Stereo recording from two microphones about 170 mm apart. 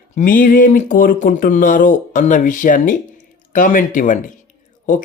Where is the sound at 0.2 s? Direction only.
55° left (ahead or behind).